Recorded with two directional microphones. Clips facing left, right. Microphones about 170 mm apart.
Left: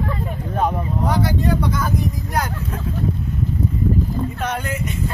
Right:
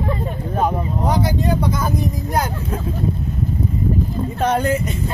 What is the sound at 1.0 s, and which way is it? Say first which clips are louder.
Speech: right 1 dB; 20° right (ahead or behind).